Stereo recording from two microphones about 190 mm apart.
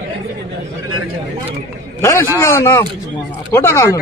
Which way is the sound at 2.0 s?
15° left (ahead or behind).